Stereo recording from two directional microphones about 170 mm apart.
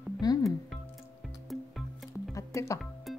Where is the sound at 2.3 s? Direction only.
20° left (ahead or behind).